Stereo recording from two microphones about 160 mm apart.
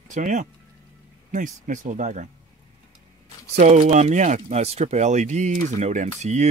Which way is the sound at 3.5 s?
50° right (ahead or behind).